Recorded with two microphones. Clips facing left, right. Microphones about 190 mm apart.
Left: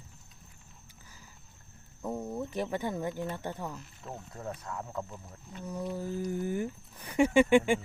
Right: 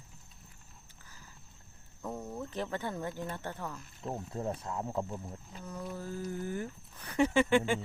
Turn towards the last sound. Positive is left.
turn(degrees=15)  # may be behind; listen again after turning